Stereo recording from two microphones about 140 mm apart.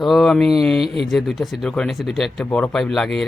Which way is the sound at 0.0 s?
Centre (ahead or behind).